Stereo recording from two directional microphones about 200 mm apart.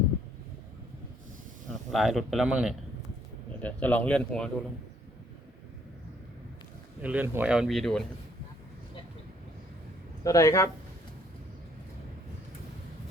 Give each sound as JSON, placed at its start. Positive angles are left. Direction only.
{"t": 1.9, "sound": "speech", "side_deg": 0}
{"t": 3.6, "sound": "speech", "side_deg": 5}
{"t": 7.0, "sound": "speech", "side_deg": -10}
{"t": 10.2, "sound": "speech", "side_deg": 15}